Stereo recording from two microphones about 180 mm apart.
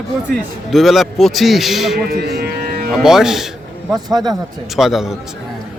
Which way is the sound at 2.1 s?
65° right (ahead or behind).